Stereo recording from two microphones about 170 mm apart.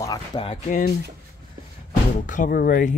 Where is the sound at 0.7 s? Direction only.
50° left (ahead or behind).